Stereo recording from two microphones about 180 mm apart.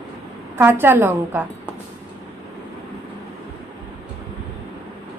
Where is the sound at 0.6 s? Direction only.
10° right (ahead or behind).